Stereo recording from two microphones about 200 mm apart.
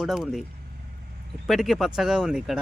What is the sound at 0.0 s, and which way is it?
Speech, centre (ahead or behind).